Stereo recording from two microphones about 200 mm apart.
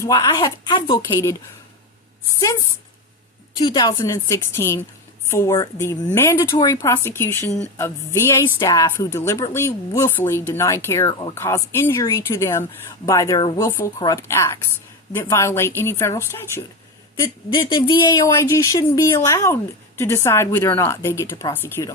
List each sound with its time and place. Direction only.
0.0 s a woman's voice: 15° left (ahead or behind)
3.6 s a woman's voice: 20° left (ahead or behind)
11.3 s a woman's voice: 15° left (ahead or behind)